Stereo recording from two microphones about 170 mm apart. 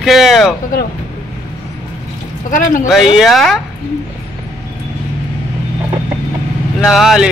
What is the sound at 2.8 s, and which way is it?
Music, centre (ahead or behind).